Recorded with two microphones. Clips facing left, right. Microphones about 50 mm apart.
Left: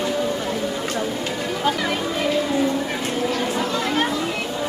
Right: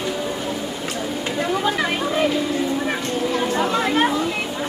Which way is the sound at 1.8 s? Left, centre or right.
Right.